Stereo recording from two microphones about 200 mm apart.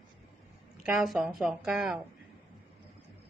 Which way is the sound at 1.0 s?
Centre (ahead or behind).